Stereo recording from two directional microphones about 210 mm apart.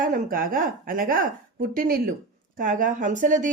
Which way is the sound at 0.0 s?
40° right (ahead or behind).